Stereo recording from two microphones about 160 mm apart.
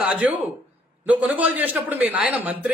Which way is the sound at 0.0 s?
10° right (ahead or behind).